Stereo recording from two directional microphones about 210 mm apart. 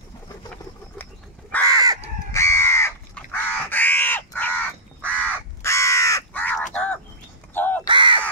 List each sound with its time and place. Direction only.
1.5 s crow: 10° left (ahead or behind)
7.8 s crow: 25° right (ahead or behind)